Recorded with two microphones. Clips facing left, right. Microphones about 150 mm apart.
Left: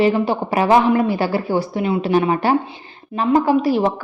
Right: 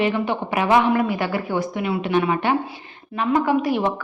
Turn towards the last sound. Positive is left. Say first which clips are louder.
# left 4 dB
turn(degrees=30)  # may be behind; listen again after turning